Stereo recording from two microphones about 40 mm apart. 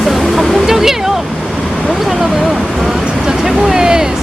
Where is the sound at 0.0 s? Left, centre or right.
Centre.